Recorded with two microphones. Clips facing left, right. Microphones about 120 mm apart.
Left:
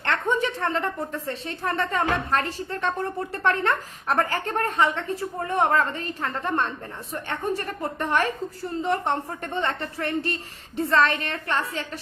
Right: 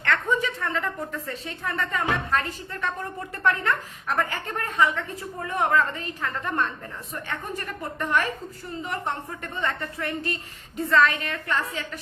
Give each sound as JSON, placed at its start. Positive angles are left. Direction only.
{"t": 0.0, "sound": "a woman's voice", "side_deg": 30}